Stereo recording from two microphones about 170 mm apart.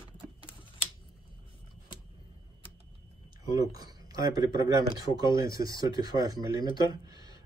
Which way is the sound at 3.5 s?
20° right (ahead or behind).